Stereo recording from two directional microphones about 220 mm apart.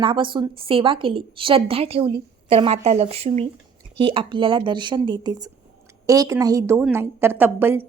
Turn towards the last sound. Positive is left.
turn(degrees=-10)  # may be behind; listen again after turning